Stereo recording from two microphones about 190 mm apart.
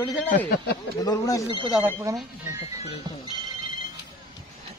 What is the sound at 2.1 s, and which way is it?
Speech, 15° right (ahead or behind).